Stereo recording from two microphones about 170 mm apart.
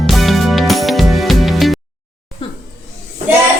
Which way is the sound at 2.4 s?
30° left (ahead or behind).